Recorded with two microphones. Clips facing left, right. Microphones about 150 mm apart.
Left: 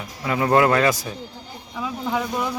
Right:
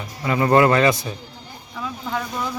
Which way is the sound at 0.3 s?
Centre (ahead or behind).